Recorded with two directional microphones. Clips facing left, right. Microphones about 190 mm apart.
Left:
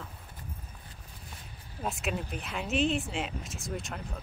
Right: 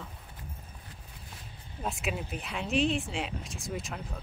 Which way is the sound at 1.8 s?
Centre (ahead or behind).